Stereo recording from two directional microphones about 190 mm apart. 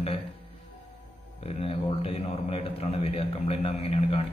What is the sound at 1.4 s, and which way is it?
A man's voice, 30° left (ahead or behind).